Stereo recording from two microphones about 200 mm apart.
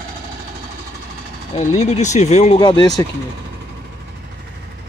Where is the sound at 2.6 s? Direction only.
20° left (ahead or behind).